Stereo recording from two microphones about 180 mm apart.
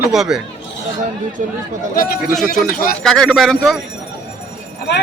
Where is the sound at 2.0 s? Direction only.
50° left (ahead or behind).